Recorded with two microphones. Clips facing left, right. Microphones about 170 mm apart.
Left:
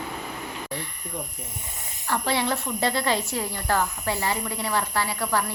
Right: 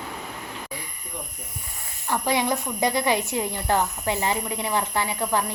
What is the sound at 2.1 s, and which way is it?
Speech, 15° right (ahead or behind).